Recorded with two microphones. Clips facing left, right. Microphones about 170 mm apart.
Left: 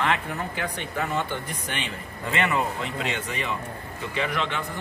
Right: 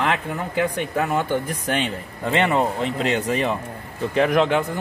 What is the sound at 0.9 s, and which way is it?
Speech, 60° right (ahead or behind).